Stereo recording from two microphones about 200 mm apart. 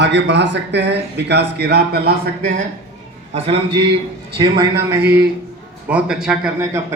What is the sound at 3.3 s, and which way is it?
Speech, 30° right (ahead or behind).